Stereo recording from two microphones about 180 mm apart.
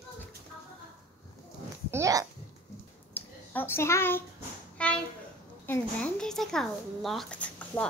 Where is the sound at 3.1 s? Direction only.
10° left (ahead or behind).